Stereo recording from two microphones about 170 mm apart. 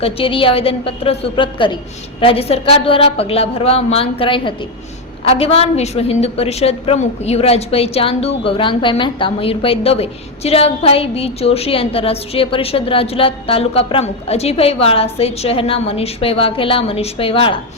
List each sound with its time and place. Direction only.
0.0 s a woman's voice: 30° left (ahead or behind)